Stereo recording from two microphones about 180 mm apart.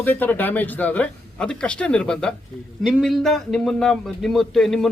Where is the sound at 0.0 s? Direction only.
10° left (ahead or behind).